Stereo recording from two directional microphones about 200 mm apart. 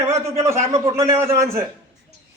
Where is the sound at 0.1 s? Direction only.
15° right (ahead or behind).